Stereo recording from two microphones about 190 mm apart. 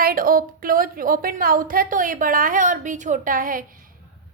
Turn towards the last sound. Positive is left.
turn(degrees=-45)  # may be behind; listen again after turning